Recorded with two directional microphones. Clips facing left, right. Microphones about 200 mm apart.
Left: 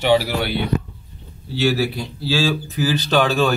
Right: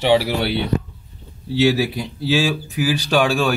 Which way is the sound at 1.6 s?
20° right (ahead or behind).